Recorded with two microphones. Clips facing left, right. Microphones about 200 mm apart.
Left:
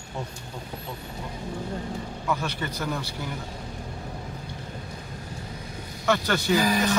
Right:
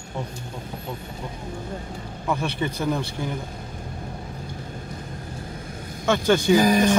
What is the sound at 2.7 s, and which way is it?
Speech, 55° right (ahead or behind).